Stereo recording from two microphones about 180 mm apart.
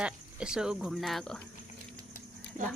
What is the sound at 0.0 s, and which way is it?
Speech, 5° right (ahead or behind).